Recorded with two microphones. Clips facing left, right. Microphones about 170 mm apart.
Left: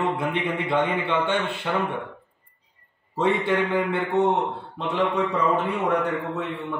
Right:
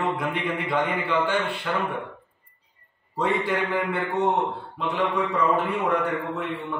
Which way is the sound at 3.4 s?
25° left (ahead or behind).